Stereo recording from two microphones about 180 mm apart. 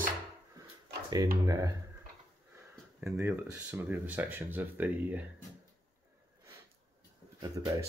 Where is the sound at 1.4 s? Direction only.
20° right (ahead or behind).